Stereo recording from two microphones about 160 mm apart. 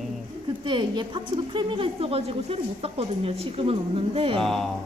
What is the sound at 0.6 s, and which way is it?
A woman's voice, 30° right (ahead or behind).